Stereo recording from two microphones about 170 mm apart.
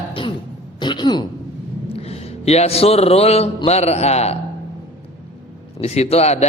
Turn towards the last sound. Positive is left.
turn(degrees=40)  # may be behind; listen again after turning